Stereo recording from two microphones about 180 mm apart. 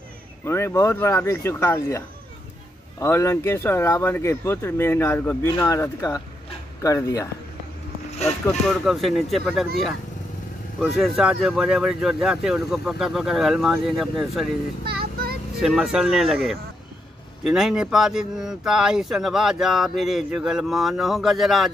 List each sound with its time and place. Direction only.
0.5 s speech: 15° left (ahead or behind)
8.5 s speech: centre (ahead or behind)
10.8 s speech: centre (ahead or behind)
14.9 s a sound: 60° right (ahead or behind)
15.6 s speech: 5° right (ahead or behind)
17.5 s speech: 5° right (ahead or behind)